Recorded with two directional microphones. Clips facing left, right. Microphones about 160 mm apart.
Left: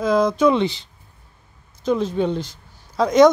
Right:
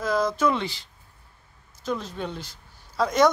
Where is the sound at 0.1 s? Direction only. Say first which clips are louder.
Left 7 dB; 20° left (ahead or behind).